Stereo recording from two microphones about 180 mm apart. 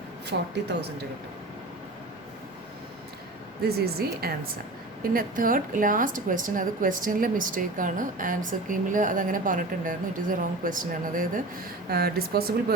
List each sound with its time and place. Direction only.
0.3 s speech: 70° right (ahead or behind)
3.6 s a woman's voice: 60° right (ahead or behind)
11.9 s speech: 60° right (ahead or behind)